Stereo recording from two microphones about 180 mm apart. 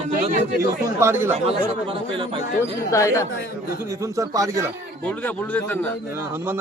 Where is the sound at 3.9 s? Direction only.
15° right (ahead or behind).